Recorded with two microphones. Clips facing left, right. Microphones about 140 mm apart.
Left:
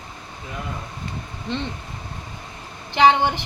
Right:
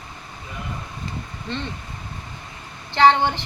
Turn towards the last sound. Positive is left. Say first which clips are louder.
# even
turn(degrees=15)  # may be behind; listen again after turning